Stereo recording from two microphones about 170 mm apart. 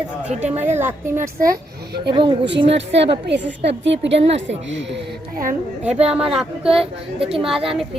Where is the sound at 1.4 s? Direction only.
65° right (ahead or behind).